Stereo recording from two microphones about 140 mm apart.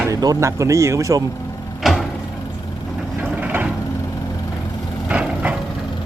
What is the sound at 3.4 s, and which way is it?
Vehicle, 10° right (ahead or behind).